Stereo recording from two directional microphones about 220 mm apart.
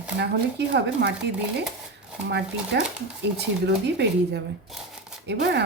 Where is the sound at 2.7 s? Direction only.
50° right (ahead or behind).